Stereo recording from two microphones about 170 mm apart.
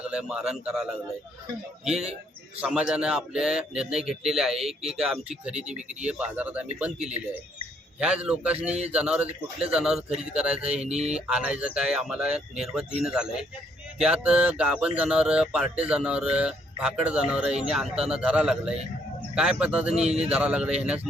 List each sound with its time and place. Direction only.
0.0 s speech: 5° right (ahead or behind)
7.9 s speech: 5° right (ahead or behind)
10.8 s a sound: 40° right (ahead or behind)
11.1 s speech: 5° right (ahead or behind)